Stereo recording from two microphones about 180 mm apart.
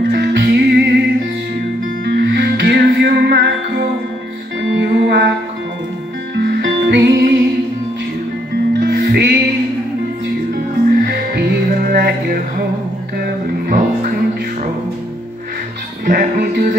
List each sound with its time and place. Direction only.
0.1 s music: 65° right (ahead or behind)
2.0 s music: 70° right (ahead or behind)
4.6 s music: 75° right (ahead or behind)
6.3 s music: 70° right (ahead or behind)
8.7 s music: 60° right (ahead or behind)
11.1 s music: 60° right (ahead or behind)
13.7 s music: 50° right (ahead or behind)
16.1 s music: 55° right (ahead or behind)